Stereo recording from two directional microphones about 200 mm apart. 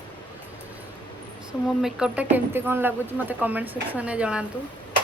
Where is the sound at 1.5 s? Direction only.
5° right (ahead or behind).